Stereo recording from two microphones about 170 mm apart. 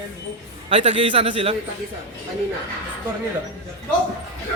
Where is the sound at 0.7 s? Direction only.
35° right (ahead or behind).